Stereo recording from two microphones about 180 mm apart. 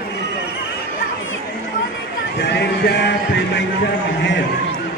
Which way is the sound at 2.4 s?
70° left (ahead or behind).